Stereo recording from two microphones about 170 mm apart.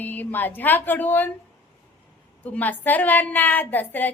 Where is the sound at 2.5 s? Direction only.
10° left (ahead or behind).